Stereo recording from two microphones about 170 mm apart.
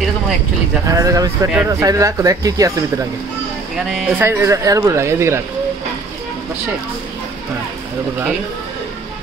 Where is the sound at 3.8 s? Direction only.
Centre (ahead or behind).